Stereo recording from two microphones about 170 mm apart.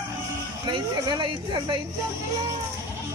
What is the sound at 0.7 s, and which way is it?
Speech, 25° right (ahead or behind).